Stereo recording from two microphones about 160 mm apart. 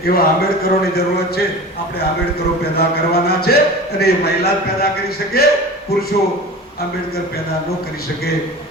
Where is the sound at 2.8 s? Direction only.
85° left.